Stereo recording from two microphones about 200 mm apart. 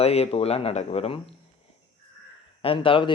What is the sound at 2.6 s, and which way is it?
Speech, 25° left (ahead or behind).